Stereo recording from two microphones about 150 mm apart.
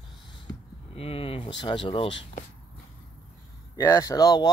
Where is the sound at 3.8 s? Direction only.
20° left (ahead or behind).